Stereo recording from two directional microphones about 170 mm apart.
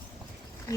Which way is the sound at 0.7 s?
20° left (ahead or behind).